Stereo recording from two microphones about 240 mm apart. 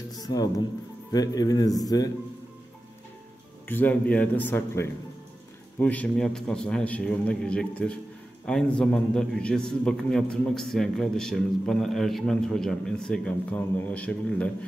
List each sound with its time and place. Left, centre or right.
0.1 s music: centre
1.1 s a man's voice: centre
3.6 s a man's voice: centre